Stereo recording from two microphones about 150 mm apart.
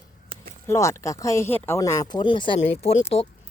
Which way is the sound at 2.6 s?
45° left (ahead or behind).